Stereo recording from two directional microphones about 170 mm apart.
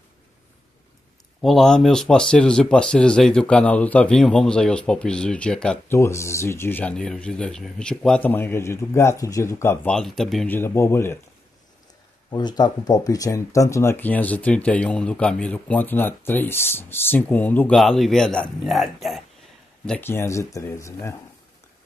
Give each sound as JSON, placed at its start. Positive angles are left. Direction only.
{"t": 1.4, "sound": "speech", "side_deg": 0}
{"t": 5.9, "sound": "speech", "side_deg": 15}
{"t": 9.8, "sound": "speech", "side_deg": 0}
{"t": 10.5, "sound": "speech", "side_deg": 15}
{"t": 12.3, "sound": "speech", "side_deg": 25}
{"t": 19.9, "sound": "speech", "side_deg": 15}